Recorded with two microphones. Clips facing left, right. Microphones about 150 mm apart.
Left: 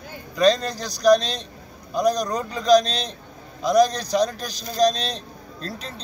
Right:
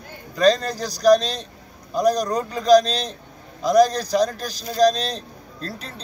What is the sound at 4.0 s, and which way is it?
Speech, 5° right (ahead or behind).